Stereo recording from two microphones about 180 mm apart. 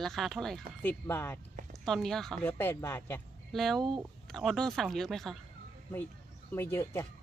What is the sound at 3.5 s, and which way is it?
Speech, centre (ahead or behind).